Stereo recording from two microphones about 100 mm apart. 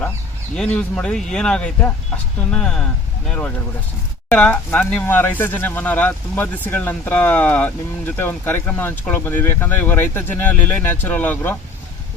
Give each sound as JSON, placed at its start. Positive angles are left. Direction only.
{"t": 0.5, "sound": "speech", "side_deg": 10}